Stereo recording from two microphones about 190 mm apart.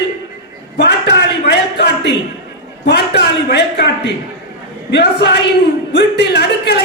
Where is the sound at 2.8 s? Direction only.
60° left (ahead or behind).